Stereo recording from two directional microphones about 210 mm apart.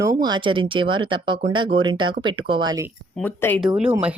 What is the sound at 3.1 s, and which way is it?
Speech, 10° left (ahead or behind).